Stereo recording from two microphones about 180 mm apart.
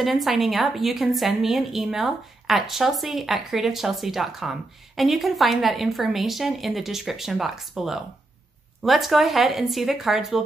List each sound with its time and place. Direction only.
0.0 s a woman's voice: centre (ahead or behind)